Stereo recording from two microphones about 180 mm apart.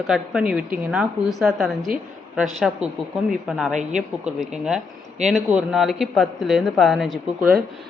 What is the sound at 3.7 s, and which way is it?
Speech, 40° right (ahead or behind).